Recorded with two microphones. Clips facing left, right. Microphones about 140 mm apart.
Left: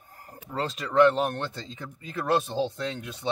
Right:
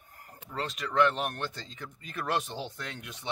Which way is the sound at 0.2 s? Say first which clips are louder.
Left 5 dB; 35° left (ahead or behind).